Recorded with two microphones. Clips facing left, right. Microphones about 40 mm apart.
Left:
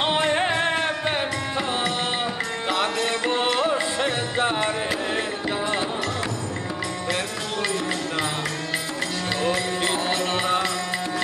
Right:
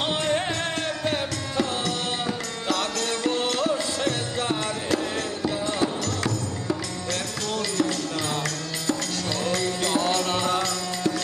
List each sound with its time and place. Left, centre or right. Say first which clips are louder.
0.0 s music: left 3 dB; left
7.7 s music: even; left
9.4 s music: left 2 dB; left